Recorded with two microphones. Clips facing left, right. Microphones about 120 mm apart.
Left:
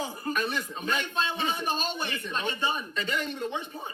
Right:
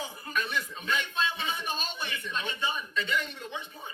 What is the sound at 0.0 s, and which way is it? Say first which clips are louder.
Speech: left 4 dB; 40° left (ahead or behind).